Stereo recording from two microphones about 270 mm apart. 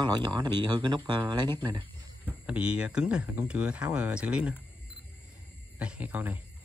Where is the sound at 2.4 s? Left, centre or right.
Centre.